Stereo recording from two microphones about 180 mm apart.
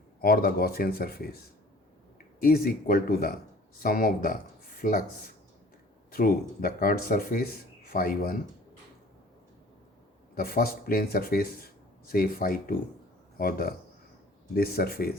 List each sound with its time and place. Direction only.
0.2 s speech: 55° left (ahead or behind)
6.1 s speech: 55° left (ahead or behind)
10.3 s speech: 55° left (ahead or behind)